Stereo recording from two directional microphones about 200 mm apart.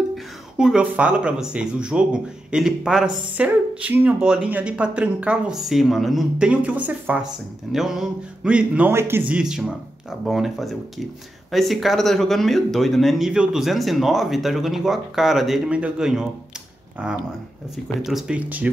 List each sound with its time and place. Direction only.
0.1 s speech: 5° right (ahead or behind)